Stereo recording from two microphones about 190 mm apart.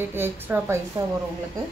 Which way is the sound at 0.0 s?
10° right (ahead or behind).